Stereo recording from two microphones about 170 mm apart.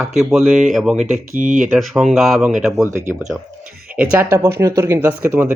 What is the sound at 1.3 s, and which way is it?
Speech, 50° right (ahead or behind).